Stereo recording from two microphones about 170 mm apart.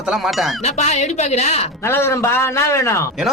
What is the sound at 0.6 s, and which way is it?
Speech, 40° left (ahead or behind).